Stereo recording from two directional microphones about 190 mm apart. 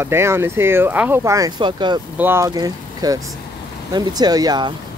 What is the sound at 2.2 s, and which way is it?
Speech, 15° right (ahead or behind).